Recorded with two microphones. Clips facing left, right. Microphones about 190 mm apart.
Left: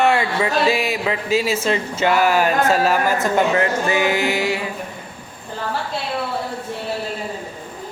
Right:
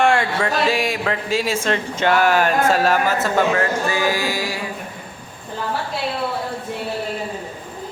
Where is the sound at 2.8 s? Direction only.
20° left (ahead or behind).